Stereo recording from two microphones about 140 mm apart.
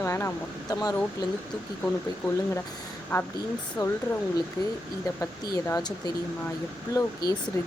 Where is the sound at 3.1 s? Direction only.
25° left (ahead or behind).